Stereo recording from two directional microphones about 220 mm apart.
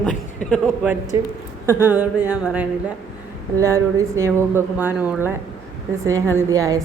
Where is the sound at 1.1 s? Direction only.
10° right (ahead or behind).